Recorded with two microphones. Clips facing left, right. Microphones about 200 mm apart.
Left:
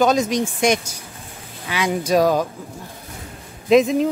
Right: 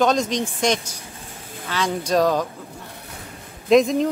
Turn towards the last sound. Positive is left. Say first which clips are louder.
# left 1 dB
turn(degrees=5)  # may be behind; listen again after turning